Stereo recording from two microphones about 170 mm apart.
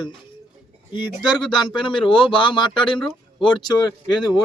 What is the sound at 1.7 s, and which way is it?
A man's voice, 30° left (ahead or behind).